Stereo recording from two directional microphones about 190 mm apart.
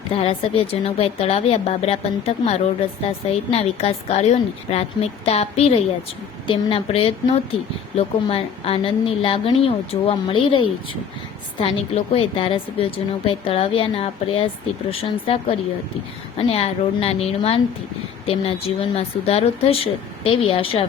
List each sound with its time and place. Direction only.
0.1 s a woman's voice: 30° left (ahead or behind)